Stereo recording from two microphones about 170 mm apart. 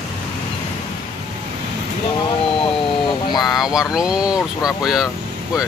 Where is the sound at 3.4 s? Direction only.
Centre (ahead or behind).